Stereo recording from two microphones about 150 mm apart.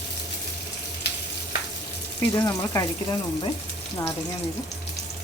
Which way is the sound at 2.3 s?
20° left (ahead or behind).